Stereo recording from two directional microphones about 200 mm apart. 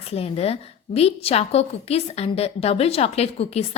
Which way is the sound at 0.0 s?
30° left (ahead or behind).